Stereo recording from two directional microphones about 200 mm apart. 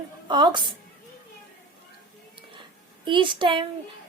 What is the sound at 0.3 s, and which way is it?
Speech, 20° right (ahead or behind).